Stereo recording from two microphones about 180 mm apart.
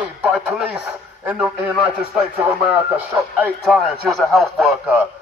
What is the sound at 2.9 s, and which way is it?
A man's voice, 10° right (ahead or behind).